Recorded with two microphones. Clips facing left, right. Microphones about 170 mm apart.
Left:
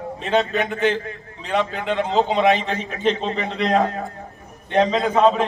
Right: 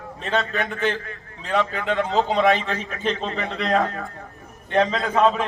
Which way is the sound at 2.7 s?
30° left (ahead or behind).